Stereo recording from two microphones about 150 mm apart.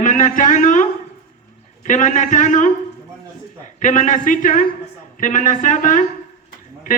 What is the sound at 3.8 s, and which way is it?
Speech, 55° left (ahead or behind).